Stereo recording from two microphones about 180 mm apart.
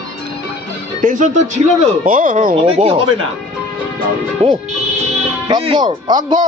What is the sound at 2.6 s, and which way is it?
Speech, 30° right (ahead or behind).